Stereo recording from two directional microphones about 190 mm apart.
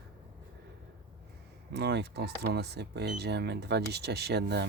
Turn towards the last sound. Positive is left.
turn(degrees=-60)  # may be behind; listen again after turning